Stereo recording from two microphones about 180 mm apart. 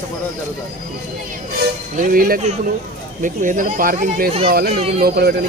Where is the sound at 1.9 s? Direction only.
50° right (ahead or behind).